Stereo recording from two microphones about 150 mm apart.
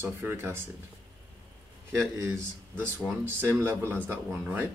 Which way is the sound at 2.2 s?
15° right (ahead or behind).